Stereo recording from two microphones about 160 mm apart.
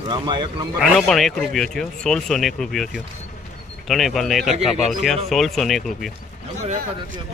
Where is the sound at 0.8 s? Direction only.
Centre (ahead or behind).